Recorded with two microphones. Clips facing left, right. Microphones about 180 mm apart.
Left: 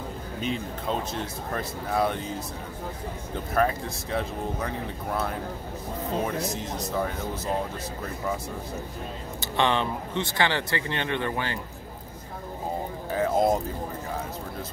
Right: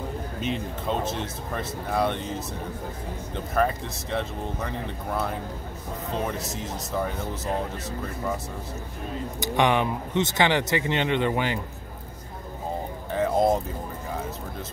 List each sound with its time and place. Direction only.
0.4 s speech: centre (ahead or behind)
3.5 s speech: centre (ahead or behind)
9.4 s speech: 15° right (ahead or behind)
13.1 s a sound: centre (ahead or behind)